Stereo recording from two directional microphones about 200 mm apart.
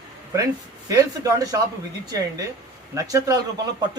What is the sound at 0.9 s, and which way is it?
Speech, 15° right (ahead or behind).